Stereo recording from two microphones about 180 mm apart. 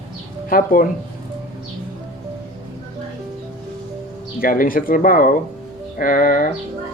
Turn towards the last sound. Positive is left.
turn(degrees=50)  # may be behind; listen again after turning